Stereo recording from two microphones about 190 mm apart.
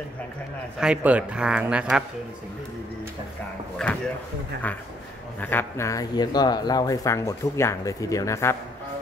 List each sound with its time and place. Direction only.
0.7 s speech: 5° right (ahead or behind)
3.8 s speech: 5° left (ahead or behind)